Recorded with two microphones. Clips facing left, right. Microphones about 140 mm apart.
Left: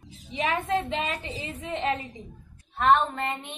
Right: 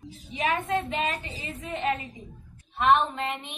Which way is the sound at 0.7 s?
25° left (ahead or behind).